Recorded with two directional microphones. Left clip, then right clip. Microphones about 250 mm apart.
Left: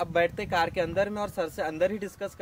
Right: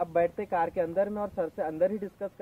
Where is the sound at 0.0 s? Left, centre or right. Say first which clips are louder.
Left 1 dB; left.